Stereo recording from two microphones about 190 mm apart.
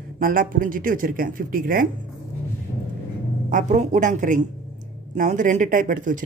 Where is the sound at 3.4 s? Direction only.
40° right (ahead or behind).